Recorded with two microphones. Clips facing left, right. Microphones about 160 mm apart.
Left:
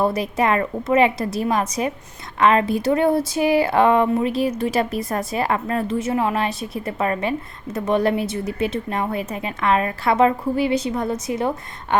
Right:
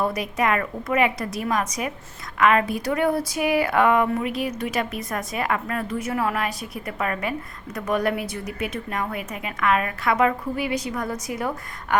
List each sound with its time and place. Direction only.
0.0 s speech: 30° left (ahead or behind)